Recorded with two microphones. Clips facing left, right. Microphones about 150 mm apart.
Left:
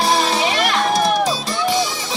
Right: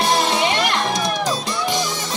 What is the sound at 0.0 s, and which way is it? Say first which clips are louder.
Music: left 1 dB; centre (ahead or behind).